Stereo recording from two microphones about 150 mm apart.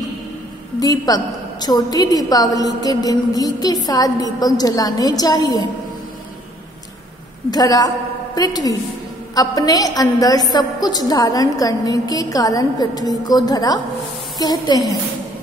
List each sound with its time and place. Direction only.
0.7 s a woman's voice: 25° left (ahead or behind)
7.5 s a woman's voice: 25° left (ahead or behind)